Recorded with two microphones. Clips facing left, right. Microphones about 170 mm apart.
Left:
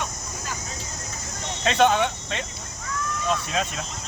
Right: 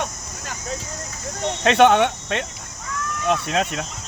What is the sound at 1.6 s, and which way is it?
Speech, 65° right (ahead or behind).